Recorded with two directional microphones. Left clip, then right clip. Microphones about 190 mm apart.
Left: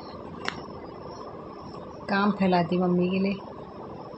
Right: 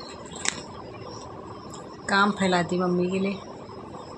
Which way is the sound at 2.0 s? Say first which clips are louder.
Right 4 dB; centre (ahead or behind).